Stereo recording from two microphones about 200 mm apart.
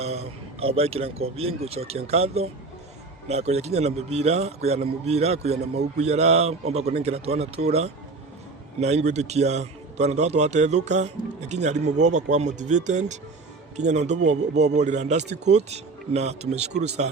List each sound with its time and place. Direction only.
0.0 s a man's voice: 30° right (ahead or behind)